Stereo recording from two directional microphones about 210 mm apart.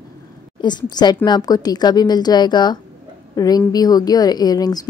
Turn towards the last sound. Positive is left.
turn(degrees=20)  # may be behind; listen again after turning